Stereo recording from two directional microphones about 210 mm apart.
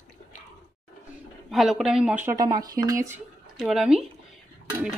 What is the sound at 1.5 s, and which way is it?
Speech, centre (ahead or behind).